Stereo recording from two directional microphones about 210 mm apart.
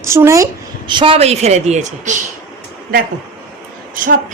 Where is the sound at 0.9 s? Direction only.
25° right (ahead or behind).